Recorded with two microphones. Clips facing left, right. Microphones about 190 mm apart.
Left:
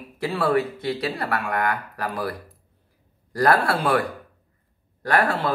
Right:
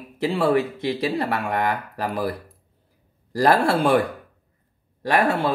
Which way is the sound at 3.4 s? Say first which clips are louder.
Right 2 dB; 25° right (ahead or behind).